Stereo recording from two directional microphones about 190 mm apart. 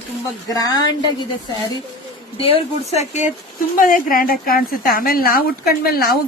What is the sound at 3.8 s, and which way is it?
A woman's voice, 45° left (ahead or behind).